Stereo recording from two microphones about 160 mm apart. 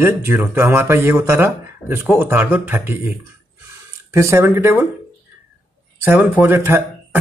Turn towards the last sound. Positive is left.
turn(degrees=-15)  # may be behind; listen again after turning